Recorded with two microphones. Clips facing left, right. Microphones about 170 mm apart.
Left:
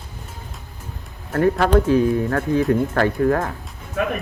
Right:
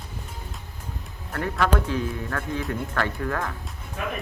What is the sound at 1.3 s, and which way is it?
Speech, 35° left (ahead or behind).